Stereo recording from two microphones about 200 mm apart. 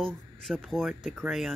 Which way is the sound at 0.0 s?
Centre (ahead or behind).